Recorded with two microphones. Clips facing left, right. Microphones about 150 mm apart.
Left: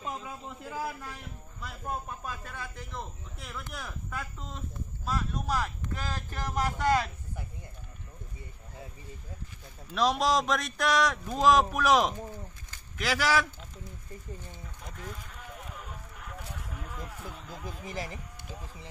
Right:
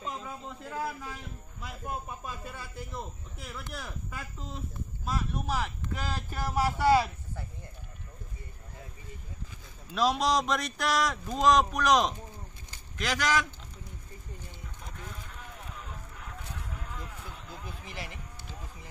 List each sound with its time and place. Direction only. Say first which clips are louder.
0.0 s a sound: even; 5° left (ahead or behind)
1.6 s a man's voice: left 1 dB; 5° right (ahead or behind)
9.9 s a man's voice: even; centre (ahead or behind)
17.6 s speech: left 6 dB; 40° left (ahead or behind)